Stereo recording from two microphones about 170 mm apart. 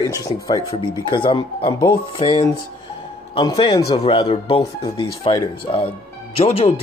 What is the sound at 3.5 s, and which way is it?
Speech, 25° left (ahead or behind).